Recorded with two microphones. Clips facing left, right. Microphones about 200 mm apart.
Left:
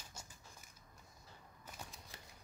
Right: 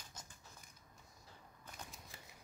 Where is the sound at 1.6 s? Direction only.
Centre (ahead or behind).